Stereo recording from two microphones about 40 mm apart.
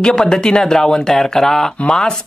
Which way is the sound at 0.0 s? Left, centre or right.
Centre.